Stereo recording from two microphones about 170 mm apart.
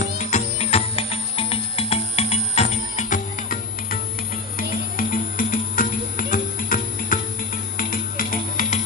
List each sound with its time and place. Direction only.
0.0 s music: 45° left (ahead or behind)